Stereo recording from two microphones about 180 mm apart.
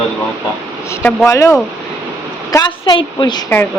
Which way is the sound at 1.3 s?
15° left (ahead or behind).